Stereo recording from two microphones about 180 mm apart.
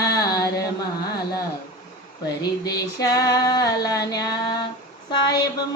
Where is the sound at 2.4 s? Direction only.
20° left (ahead or behind).